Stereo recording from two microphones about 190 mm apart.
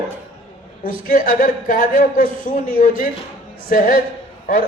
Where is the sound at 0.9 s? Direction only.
45° left (ahead or behind).